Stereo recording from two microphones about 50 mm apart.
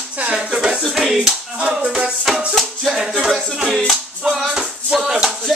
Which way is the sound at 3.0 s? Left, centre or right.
Centre.